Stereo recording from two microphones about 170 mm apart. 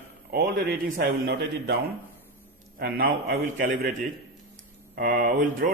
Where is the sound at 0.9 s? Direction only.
70° right (ahead or behind).